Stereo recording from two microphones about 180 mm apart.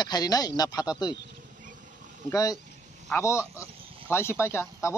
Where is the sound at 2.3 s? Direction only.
20° left (ahead or behind).